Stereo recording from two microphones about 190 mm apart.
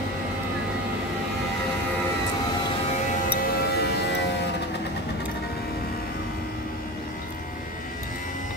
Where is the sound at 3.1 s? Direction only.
55° left (ahead or behind).